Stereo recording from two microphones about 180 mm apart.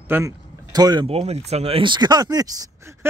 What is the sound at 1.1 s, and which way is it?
Speech, 35° right (ahead or behind).